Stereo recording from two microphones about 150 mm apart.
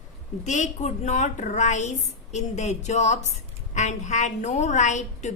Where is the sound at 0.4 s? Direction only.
55° left (ahead or behind).